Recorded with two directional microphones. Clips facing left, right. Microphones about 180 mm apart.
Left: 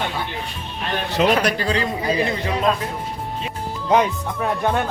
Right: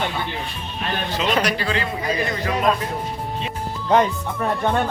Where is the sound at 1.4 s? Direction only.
50° left (ahead or behind).